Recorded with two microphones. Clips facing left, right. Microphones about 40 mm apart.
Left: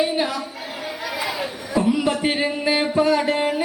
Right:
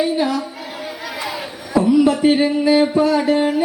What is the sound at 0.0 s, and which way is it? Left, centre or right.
Speech, centre.